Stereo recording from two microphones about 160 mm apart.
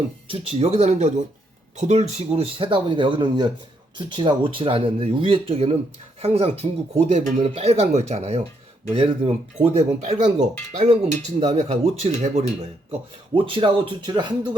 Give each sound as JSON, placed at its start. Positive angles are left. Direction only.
{"t": 0.3, "sound": "speech", "side_deg": -40}